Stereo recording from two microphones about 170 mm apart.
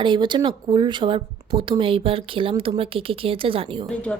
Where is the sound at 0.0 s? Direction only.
25° right (ahead or behind).